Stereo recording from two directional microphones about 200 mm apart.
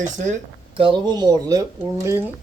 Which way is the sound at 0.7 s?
25° right (ahead or behind).